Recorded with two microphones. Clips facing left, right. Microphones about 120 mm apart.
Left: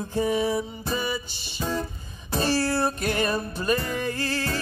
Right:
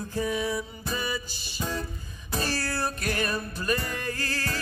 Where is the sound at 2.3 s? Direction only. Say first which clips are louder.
Left 6 dB; 25° left (ahead or behind).